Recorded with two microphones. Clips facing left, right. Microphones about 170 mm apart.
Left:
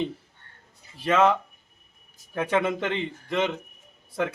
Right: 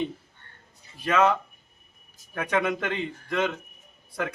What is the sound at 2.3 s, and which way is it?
A man's voice, 25° left (ahead or behind).